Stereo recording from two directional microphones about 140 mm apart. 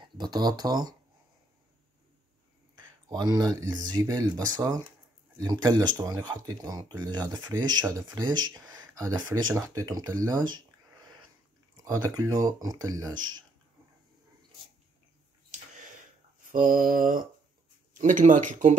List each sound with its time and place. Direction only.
0.0 s speech: 30° right (ahead or behind)
2.7 s speech: 30° right (ahead or behind)
11.7 s speech: 25° right (ahead or behind)
16.5 s mantra: 80° right
17.9 s speech: 65° right (ahead or behind)